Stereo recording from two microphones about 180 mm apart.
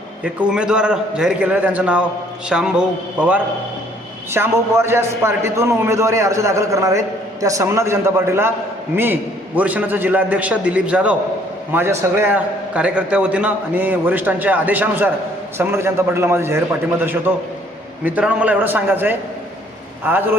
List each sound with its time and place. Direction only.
0.3 s a man's voice: 5° right (ahead or behind)